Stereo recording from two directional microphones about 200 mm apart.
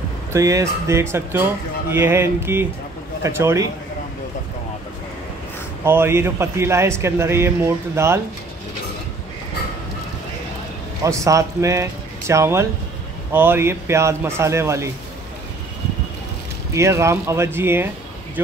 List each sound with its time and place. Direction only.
0.3 s speech: 15° right (ahead or behind)
5.9 s speech: 10° right (ahead or behind)
11.1 s speech: 15° right (ahead or behind)
16.7 s speech: 15° right (ahead or behind)